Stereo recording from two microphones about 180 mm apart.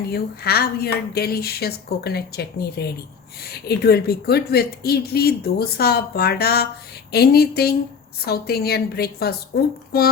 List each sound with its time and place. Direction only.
0.1 s speech: 60° left (ahead or behind)